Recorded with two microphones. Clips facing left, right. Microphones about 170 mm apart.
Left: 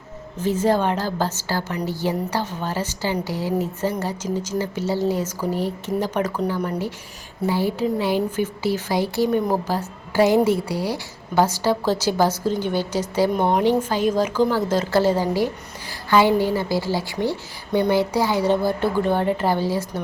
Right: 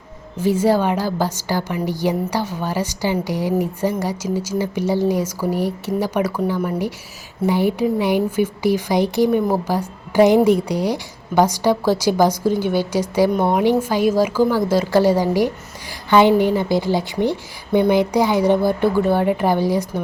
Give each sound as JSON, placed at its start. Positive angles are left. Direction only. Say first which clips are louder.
{"t": 0.3, "sound": "a woman's voice", "louder": "right 3 dB", "side_deg": -10}
{"t": 7.4, "sound": "a woman's voice", "louder": "right 4 dB", "side_deg": -15}